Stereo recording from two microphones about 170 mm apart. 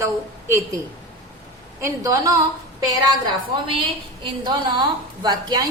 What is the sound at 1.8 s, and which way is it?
A woman's voice, 20° right (ahead or behind).